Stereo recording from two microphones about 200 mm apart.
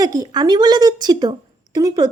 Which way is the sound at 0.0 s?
20° right (ahead or behind).